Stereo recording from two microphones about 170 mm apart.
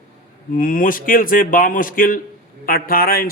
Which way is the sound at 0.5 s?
55° left (ahead or behind).